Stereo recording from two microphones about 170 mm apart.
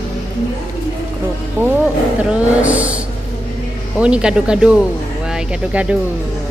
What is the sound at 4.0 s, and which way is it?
Music, 5° right (ahead or behind).